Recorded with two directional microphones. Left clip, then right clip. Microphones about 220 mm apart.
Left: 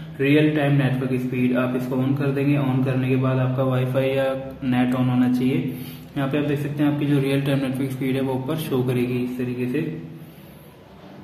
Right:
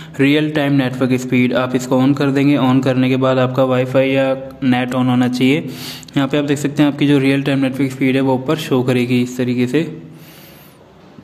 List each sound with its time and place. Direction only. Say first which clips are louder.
0.2 s a man's voice: right 4 dB; 50° right (ahead or behind)
3.9 s a man's voice: right 7 dB; 35° right (ahead or behind)
9.4 s a man's voice: right 9 dB; 55° right (ahead or behind)